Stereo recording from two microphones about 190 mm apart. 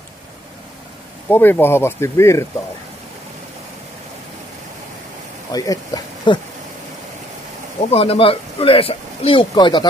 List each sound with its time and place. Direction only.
1.3 s speech: 10° left (ahead or behind)
5.5 s speech: 20° left (ahead or behind)
7.9 s speech: 30° left (ahead or behind)